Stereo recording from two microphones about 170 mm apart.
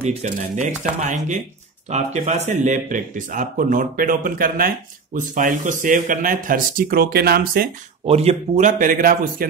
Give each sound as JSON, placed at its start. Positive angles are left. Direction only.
{"t": 0.0, "sound": "speech", "side_deg": -45}
{"t": 8.0, "sound": "speech", "side_deg": -35}